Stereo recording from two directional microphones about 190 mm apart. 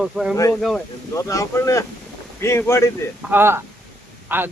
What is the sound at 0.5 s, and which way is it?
Speech, centre (ahead or behind).